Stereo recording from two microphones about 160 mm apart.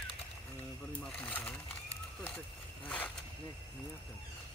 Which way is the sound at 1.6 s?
35° left (ahead or behind).